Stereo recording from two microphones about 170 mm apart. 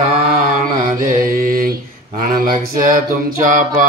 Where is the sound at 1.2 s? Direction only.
55° right (ahead or behind).